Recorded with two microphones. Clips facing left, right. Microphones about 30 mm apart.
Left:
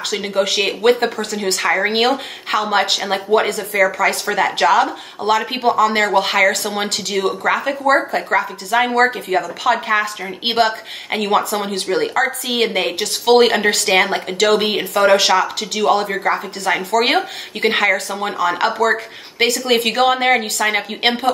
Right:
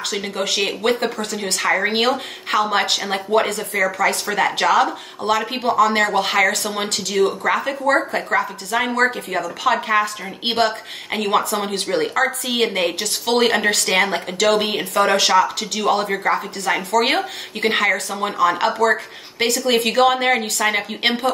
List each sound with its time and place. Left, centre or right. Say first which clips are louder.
0.1 s speech: left 6 dB; centre
18.9 s speech: left 1 dB; centre